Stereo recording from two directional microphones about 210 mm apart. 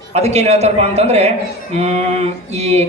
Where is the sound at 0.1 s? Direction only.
30° right (ahead or behind).